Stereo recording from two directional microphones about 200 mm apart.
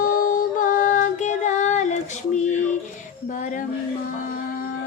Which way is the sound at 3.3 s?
40° left (ahead or behind).